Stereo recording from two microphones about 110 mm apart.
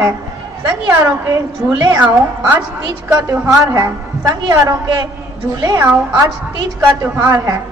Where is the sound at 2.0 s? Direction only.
15° right (ahead or behind).